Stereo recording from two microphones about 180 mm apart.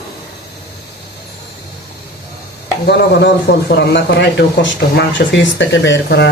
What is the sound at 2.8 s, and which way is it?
A man's voice, 70° left (ahead or behind).